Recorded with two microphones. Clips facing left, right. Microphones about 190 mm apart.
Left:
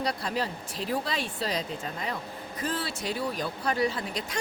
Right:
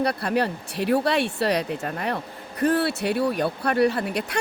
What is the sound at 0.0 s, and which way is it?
Speech, 60° right (ahead or behind).